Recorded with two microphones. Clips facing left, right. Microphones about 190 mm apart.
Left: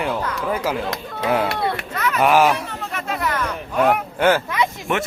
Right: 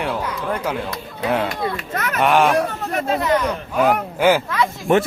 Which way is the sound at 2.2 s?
5° left (ahead or behind).